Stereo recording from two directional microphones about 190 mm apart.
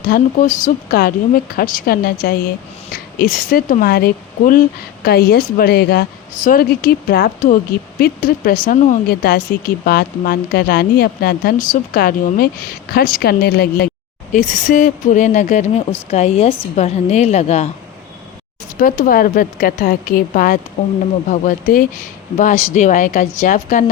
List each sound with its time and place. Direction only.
0.0 s a woman's voice: 50° left (ahead or behind)
14.3 s a woman's voice: 40° left (ahead or behind)
18.8 s a woman's voice: 45° left (ahead or behind)